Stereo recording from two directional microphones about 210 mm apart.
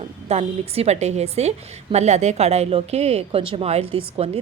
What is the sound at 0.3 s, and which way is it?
A woman's voice, 30° right (ahead or behind).